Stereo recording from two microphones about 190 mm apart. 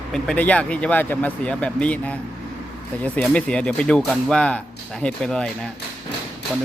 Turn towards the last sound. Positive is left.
turn(degrees=0)  # may be behind; listen again after turning